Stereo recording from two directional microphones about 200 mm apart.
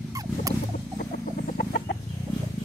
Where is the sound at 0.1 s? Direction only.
15° right (ahead or behind).